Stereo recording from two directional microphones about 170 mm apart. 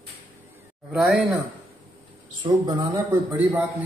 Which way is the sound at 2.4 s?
25° right (ahead or behind).